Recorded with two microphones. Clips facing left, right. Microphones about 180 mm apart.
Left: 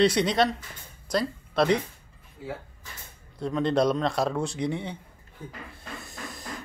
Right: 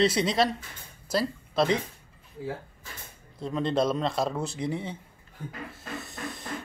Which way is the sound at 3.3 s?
Centre (ahead or behind).